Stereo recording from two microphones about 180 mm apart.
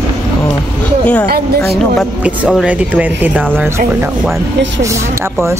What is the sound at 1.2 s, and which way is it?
Speech, 60° right (ahead or behind).